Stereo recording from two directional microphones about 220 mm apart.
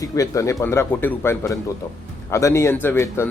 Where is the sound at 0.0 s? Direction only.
15° left (ahead or behind).